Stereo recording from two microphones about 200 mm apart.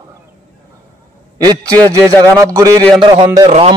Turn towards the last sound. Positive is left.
turn(degrees=-30)  # may be behind; listen again after turning